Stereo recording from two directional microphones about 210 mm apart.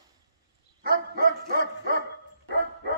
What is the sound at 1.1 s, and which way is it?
Dog, 45° right (ahead or behind).